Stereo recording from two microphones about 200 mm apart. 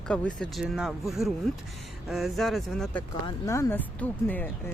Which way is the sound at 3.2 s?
15° left (ahead or behind).